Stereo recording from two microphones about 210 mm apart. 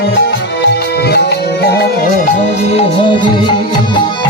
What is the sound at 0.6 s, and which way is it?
Music, 55° left (ahead or behind).